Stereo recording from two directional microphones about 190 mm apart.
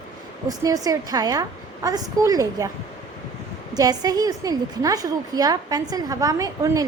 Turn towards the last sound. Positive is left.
turn(degrees=-20)  # may be behind; listen again after turning